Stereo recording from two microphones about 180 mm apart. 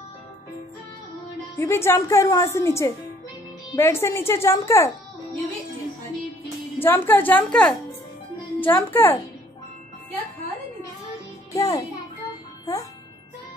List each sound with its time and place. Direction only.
1.6 s a woman's voice: 15° left (ahead or behind)
6.8 s a woman's voice: 10° left (ahead or behind)
11.5 s music: 20° left (ahead or behind)